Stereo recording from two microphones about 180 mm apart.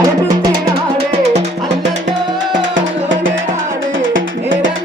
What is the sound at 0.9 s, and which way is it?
Music, 40° right (ahead or behind).